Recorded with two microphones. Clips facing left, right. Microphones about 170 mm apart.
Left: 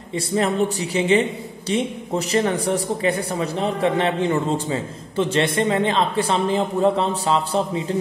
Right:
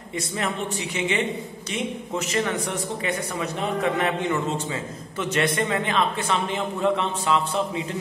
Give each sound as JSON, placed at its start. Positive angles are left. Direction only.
{"t": 0.1, "sound": "speech", "side_deg": 35}